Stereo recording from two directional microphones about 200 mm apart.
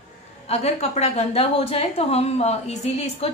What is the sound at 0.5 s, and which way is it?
A woman's voice, 30° left (ahead or behind).